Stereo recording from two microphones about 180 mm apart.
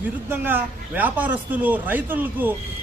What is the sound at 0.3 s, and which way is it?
A man's voice, 10° right (ahead or behind).